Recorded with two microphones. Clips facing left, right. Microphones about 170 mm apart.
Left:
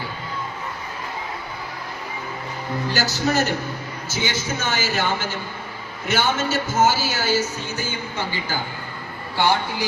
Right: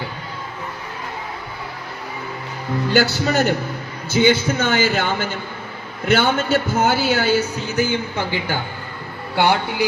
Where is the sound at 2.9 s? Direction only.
60° right (ahead or behind).